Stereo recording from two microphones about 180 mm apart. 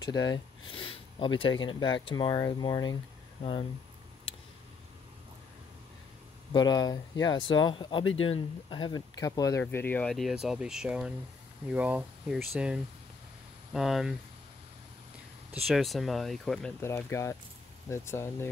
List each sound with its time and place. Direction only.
0.0 s speech: 20° left (ahead or behind)
6.5 s speech: 25° left (ahead or behind)
8.0 s speech: 90° left
8.4 s speech: 25° left (ahead or behind); by 14.1 s centre (ahead or behind)
15.7 s speech: centre (ahead or behind)
16.8 s speech: 15° left (ahead or behind)